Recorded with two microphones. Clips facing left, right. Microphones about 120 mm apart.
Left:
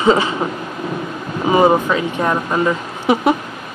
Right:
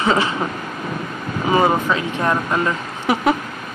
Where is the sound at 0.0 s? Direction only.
15° left (ahead or behind).